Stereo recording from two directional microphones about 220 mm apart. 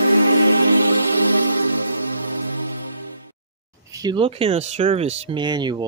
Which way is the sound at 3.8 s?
15° right (ahead or behind).